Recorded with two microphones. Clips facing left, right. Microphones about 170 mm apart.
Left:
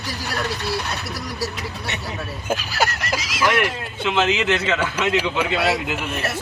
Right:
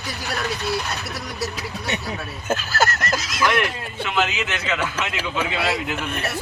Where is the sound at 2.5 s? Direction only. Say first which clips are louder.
Right 1 dB; 15° left (ahead or behind).